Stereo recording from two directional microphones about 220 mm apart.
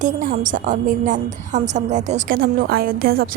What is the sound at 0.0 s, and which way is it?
A woman's voice, 35° right (ahead or behind).